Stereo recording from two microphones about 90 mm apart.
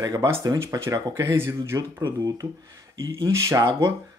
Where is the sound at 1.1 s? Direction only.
25° right (ahead or behind).